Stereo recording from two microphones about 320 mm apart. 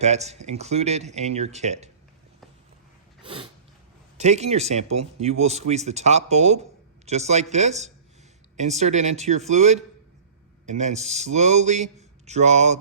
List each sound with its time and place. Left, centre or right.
0.0 s speech: right
3.2 s a sound: centre
4.2 s speech: right